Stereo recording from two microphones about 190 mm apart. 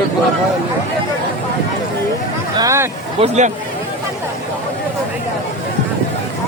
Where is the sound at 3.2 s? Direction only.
35° right (ahead or behind).